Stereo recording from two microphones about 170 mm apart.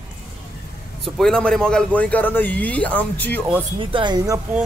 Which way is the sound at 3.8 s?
30° right (ahead or behind).